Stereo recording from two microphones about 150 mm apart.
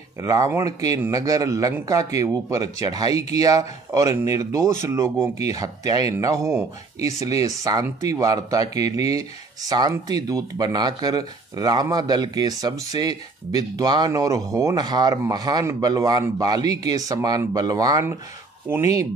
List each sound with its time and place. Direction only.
0.2 s speech: 20° right (ahead or behind)